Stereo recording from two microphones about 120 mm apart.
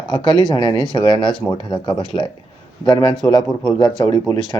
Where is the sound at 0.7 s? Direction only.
30° right (ahead or behind).